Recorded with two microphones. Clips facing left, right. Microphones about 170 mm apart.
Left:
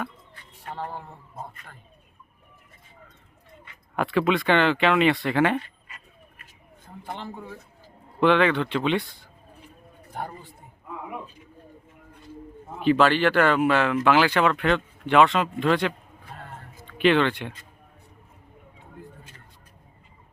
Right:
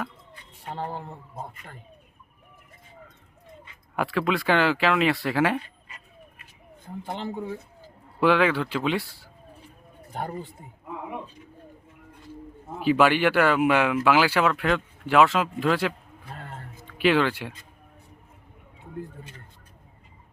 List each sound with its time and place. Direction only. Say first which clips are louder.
0.6 s speech: right 1 dB; 20° right (ahead or behind)
3.9 s speech: left 3 dB; centre (ahead or behind)
8.2 s speech: left 1 dB; 5° right (ahead or behind)
12.8 s speech: left 1 dB; 10° right (ahead or behind)
17.0 s speech: left 1 dB; 5° right (ahead or behind)